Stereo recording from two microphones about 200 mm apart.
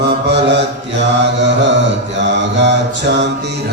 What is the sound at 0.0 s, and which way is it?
Mantra, 60° right (ahead or behind).